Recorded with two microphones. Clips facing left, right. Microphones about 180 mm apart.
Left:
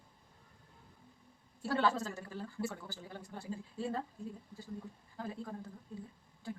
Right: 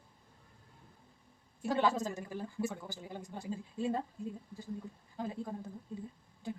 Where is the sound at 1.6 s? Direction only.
20° right (ahead or behind).